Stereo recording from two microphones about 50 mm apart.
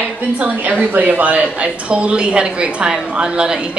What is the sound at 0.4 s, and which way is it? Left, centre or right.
A woman's voice, right.